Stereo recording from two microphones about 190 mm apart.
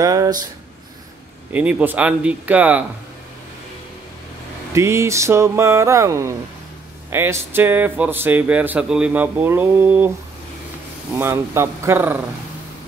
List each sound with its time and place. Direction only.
0.0 s speech: 20° right (ahead or behind)
1.5 s speech: 10° right (ahead or behind)
4.7 s speech: 15° right (ahead or behind)
11.1 s speech: 10° right (ahead or behind)